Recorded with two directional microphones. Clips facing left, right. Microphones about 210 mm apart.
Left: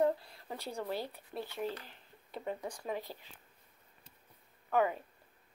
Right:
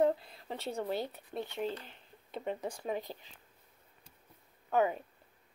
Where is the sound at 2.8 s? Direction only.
20° right (ahead or behind).